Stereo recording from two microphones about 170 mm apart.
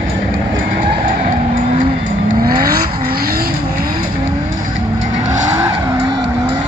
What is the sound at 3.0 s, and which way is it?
Vehicle, 60° right (ahead or behind).